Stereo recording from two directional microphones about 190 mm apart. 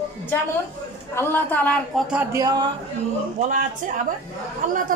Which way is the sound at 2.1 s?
15° right (ahead or behind).